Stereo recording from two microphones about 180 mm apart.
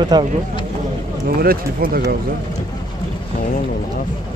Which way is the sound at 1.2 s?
55° right (ahead or behind).